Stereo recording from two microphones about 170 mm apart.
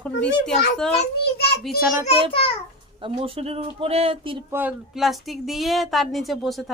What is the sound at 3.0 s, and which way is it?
Speech, 35° right (ahead or behind).